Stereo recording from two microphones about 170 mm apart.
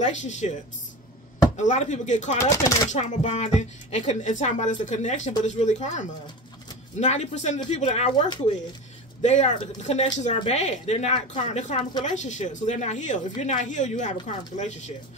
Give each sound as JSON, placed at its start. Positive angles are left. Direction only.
{"t": 0.0, "sound": "speech", "side_deg": 45}
{"t": 1.6, "sound": "speech", "side_deg": 45}